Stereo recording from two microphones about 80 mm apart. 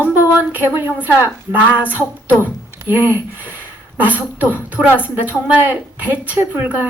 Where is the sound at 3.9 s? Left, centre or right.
Right.